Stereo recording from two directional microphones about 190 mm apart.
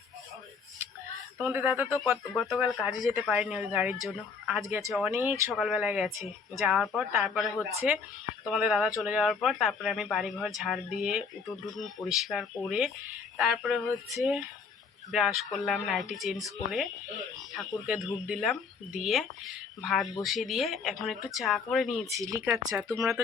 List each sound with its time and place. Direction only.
1.4 s speech: 10° right (ahead or behind)
17.5 s speech: centre (ahead or behind)
22.2 s speech: 15° right (ahead or behind)
22.7 s speech: centre (ahead or behind)
23.0 s speech: 15° right (ahead or behind)